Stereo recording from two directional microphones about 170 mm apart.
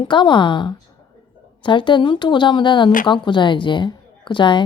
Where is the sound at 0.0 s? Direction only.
25° left (ahead or behind).